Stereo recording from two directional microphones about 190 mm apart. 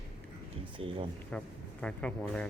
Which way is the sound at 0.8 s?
30° right (ahead or behind).